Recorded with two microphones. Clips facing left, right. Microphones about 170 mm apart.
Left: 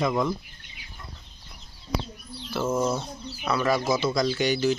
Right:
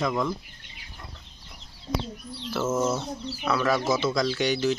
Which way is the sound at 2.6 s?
15° left (ahead or behind).